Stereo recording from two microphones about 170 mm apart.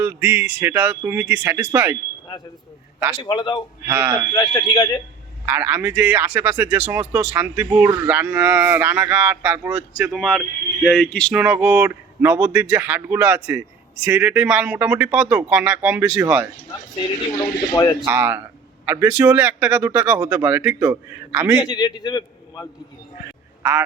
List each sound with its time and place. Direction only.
0.0 s a man's voice: 10° right (ahead or behind)
3.2 s a man's voice: 25° left (ahead or behind)
3.8 s a man's voice: 10° right (ahead or behind)
4.4 s a man's voice: 20° left (ahead or behind)
5.5 s a man's voice: 10° right (ahead or behind); by 11.3 s 5° left (ahead or behind)
11.3 s a man's voice: 10° right (ahead or behind)
17.0 s a man's voice: 30° left (ahead or behind)
18.0 s a man's voice: 10° right (ahead or behind)
21.6 s a man's voice: 25° left (ahead or behind)
23.6 s a man's voice: 10° right (ahead or behind)